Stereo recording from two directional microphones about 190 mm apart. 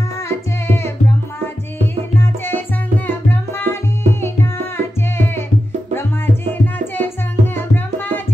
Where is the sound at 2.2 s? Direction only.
10° left (ahead or behind).